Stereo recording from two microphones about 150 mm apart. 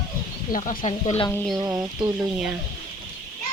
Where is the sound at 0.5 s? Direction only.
65° left (ahead or behind).